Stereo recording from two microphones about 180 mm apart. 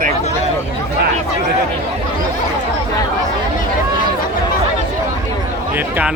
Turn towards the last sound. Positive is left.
turn(degrees=-10)  # may be behind; listen again after turning